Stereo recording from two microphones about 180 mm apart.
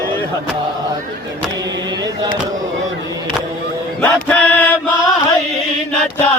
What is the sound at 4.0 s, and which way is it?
Chant, 5° left (ahead or behind).